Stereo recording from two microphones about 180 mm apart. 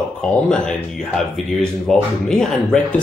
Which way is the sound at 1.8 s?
Centre (ahead or behind).